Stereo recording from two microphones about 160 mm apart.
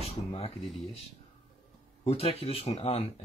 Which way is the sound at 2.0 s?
40° left (ahead or behind).